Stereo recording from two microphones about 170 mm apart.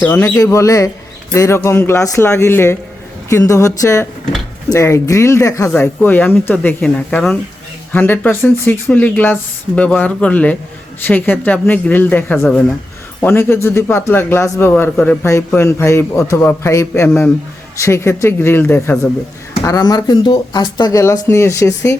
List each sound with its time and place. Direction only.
0.0 s speech: 15° left (ahead or behind)